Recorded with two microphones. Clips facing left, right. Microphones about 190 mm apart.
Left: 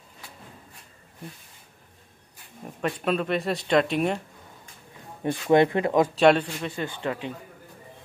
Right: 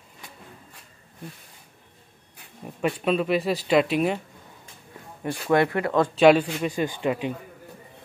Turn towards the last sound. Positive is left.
turn(degrees=-15)  # may be behind; listen again after turning